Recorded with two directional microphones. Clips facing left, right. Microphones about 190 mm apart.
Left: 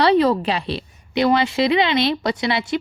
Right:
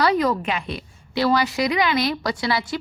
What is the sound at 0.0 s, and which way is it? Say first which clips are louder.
Speech: left 4 dB; 30° left (ahead or behind).